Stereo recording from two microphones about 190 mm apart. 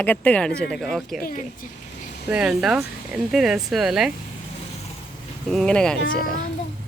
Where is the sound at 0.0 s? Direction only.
10° left (ahead or behind).